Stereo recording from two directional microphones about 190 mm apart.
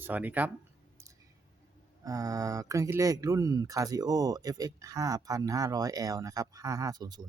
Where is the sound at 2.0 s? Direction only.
20° right (ahead or behind).